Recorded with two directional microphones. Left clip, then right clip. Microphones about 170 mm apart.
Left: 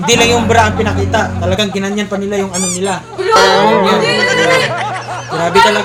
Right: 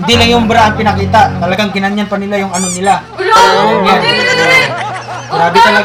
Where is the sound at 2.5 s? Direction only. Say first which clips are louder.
Right 6 dB; centre (ahead or behind).